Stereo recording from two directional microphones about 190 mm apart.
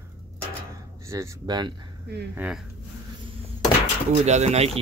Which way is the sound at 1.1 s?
20° right (ahead or behind).